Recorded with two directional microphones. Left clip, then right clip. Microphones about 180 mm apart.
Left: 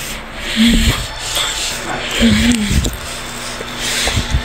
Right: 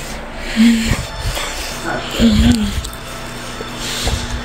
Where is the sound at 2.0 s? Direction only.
10° right (ahead or behind).